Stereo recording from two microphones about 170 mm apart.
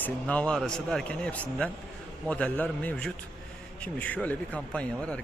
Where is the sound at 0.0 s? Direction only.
5° left (ahead or behind).